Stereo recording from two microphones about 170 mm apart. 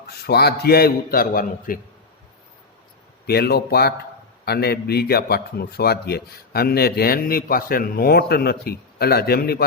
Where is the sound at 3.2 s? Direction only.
70° left (ahead or behind).